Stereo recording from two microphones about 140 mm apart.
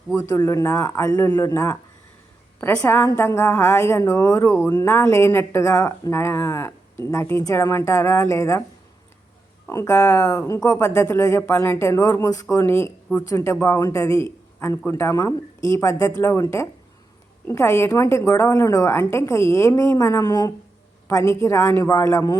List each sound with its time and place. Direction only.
0.1 s a woman's voice: 20° left (ahead or behind)
9.6 s a woman's voice: 20° left (ahead or behind)